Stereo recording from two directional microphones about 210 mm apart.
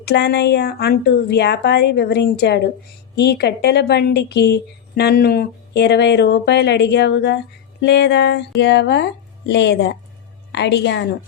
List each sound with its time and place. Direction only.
0.0 s a woman's voice: 50° left (ahead or behind)